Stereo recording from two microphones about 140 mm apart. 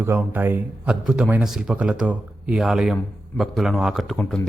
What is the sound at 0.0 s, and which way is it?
A man's voice, 15° right (ahead or behind).